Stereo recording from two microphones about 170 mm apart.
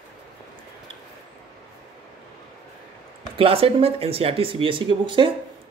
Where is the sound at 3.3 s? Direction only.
35° right (ahead or behind).